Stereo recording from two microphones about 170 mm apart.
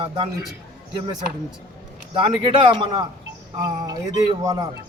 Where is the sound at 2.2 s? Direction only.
30° right (ahead or behind).